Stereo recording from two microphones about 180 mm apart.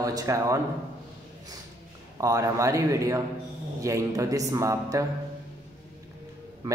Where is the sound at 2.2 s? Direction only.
20° right (ahead or behind).